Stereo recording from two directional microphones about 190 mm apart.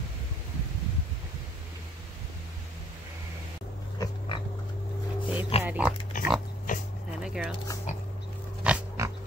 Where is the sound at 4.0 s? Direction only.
25° left (ahead or behind).